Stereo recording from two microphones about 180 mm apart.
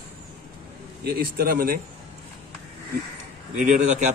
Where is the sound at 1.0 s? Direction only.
60° right (ahead or behind).